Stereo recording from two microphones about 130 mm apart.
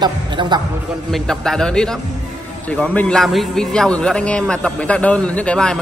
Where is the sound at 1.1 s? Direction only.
5° left (ahead or behind).